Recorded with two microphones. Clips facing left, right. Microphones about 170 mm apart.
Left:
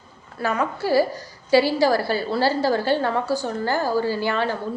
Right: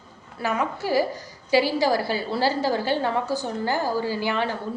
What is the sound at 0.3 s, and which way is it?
A woman's voice, 15° right (ahead or behind).